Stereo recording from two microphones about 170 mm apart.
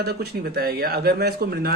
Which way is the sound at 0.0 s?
65° right (ahead or behind).